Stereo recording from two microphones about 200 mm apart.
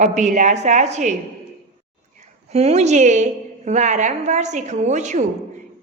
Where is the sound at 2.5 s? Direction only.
30° right (ahead or behind).